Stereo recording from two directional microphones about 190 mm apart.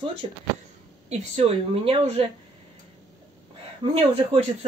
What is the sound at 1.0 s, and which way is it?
Speech, 35° right (ahead or behind).